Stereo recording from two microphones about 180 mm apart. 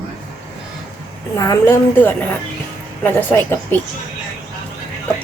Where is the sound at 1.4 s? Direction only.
15° left (ahead or behind).